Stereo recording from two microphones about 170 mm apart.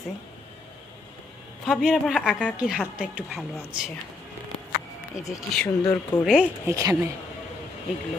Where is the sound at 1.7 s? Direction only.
5° right (ahead or behind).